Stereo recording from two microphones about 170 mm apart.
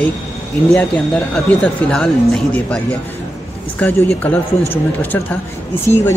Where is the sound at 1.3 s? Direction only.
5° left (ahead or behind).